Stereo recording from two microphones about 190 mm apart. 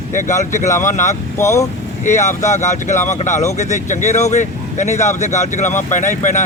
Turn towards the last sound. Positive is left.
turn(degrees=40)  # may be behind; listen again after turning